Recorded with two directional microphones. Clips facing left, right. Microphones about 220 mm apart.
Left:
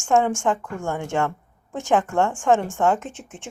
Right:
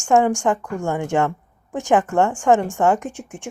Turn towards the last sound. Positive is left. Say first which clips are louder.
# right 5 dB
turn(degrees=-15)  # may be behind; listen again after turning